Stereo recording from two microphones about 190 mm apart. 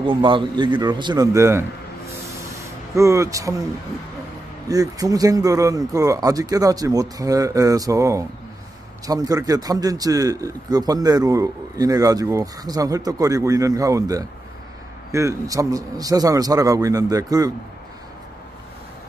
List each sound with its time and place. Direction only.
0.0 s a man's voice: 25° right (ahead or behind)
3.0 s a man's voice: 15° right (ahead or behind)
4.6 s a man's voice: 20° right (ahead or behind)